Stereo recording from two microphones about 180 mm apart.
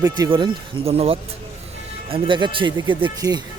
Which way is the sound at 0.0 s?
25° right (ahead or behind).